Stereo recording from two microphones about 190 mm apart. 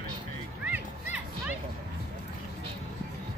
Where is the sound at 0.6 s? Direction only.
5° right (ahead or behind).